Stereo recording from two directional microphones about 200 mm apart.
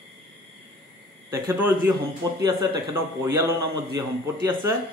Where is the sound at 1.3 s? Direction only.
10° right (ahead or behind).